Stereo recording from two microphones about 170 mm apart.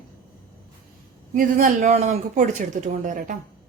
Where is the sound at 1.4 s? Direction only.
50° right (ahead or behind).